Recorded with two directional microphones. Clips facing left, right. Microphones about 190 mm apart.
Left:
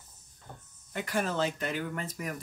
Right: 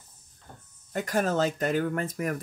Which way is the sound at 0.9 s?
45° right (ahead or behind).